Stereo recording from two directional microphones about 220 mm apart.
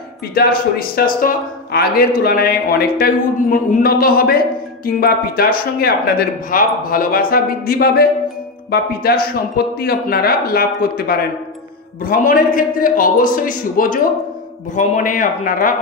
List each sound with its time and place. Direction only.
0.3 s a man's voice: 45° left (ahead or behind)